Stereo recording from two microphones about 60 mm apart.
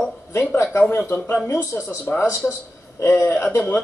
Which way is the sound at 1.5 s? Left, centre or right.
Left.